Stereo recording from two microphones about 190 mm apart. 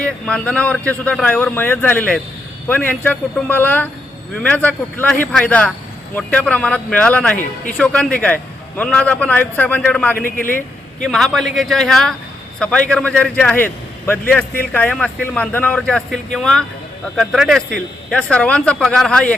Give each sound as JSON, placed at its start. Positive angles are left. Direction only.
{"t": 0.0, "sound": "speech", "side_deg": 5}
{"t": 7.3, "sound": "a man's voice", "side_deg": 45}
{"t": 7.8, "sound": "speech", "side_deg": 5}
{"t": 10.2, "sound": "a man's voice", "side_deg": 45}
{"t": 11.0, "sound": "speech", "side_deg": 0}